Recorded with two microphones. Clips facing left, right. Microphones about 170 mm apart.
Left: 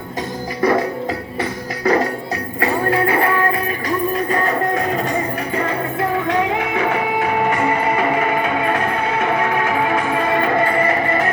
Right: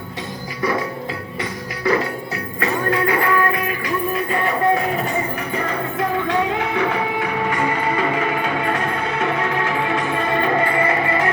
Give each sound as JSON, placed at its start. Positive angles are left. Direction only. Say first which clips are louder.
{"t": 0.6, "sound": "music", "louder": "left 5 dB", "side_deg": 45}